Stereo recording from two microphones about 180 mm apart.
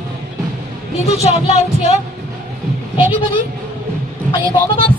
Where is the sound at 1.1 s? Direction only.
35° left (ahead or behind).